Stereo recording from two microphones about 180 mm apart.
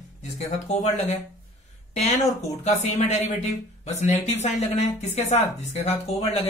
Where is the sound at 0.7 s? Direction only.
40° left (ahead or behind).